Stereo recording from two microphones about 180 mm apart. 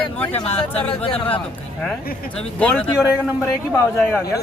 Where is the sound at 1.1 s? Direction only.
30° left (ahead or behind).